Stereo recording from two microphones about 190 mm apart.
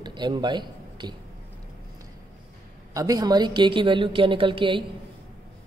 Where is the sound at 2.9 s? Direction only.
20° right (ahead or behind).